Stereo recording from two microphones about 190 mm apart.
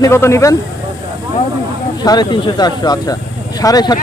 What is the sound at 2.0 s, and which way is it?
Speech, 20° left (ahead or behind).